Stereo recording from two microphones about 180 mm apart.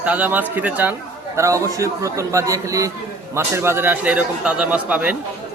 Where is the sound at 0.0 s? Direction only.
10° right (ahead or behind).